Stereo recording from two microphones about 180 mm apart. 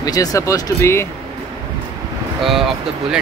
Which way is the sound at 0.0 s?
20° left (ahead or behind).